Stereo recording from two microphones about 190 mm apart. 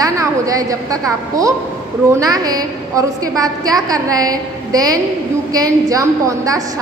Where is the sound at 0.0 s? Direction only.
20° right (ahead or behind).